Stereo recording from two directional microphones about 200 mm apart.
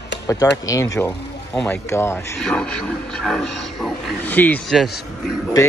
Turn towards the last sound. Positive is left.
turn(degrees=0)  # may be behind; listen again after turning